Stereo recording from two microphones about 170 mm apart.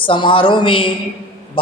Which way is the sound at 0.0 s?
30° left (ahead or behind).